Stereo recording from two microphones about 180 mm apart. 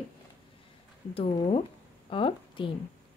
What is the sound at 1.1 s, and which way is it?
A woman's voice, 30° left (ahead or behind).